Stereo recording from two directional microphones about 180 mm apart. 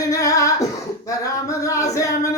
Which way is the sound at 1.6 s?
20° left (ahead or behind).